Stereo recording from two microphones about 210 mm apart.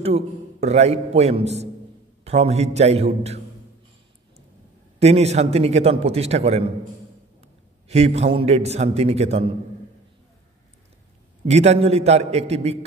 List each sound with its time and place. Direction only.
0.0 s a man's voice: 30° right (ahead or behind)
4.9 s a man's voice: 30° right (ahead or behind)
7.9 s a man's voice: 30° right (ahead or behind)
11.4 s a man's voice: 30° right (ahead or behind)